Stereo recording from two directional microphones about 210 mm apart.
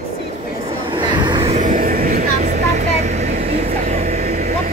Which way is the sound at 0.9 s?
20° right (ahead or behind).